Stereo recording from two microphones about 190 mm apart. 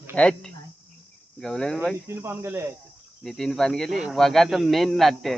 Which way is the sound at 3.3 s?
Centre (ahead or behind).